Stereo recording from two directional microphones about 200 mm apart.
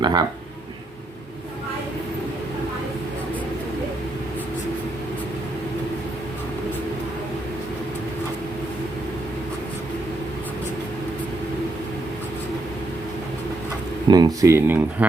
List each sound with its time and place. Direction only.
0.0 s speech: 20° right (ahead or behind)
14.1 s speech: 20° right (ahead or behind)